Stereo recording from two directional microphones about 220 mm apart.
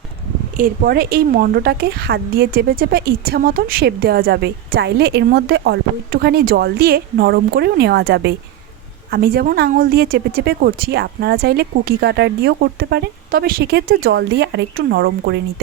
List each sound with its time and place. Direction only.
0.5 s speech: 40° right (ahead or behind)